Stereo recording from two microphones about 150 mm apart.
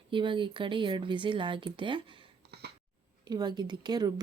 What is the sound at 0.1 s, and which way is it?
Speech, 35° right (ahead or behind).